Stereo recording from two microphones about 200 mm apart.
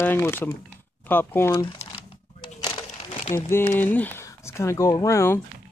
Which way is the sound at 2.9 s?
30° left (ahead or behind).